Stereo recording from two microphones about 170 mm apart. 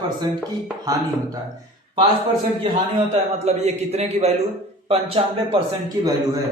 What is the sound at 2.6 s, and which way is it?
A man's voice, 35° right (ahead or behind).